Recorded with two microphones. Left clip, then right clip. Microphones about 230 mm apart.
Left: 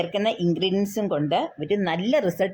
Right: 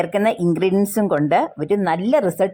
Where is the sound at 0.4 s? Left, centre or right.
Right.